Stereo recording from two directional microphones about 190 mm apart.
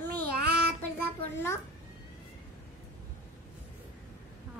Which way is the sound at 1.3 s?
15° left (ahead or behind).